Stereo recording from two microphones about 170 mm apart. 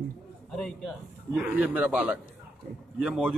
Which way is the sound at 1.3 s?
10° right (ahead or behind).